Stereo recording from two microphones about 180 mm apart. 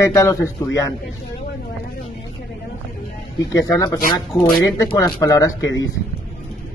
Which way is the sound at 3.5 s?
20° left (ahead or behind).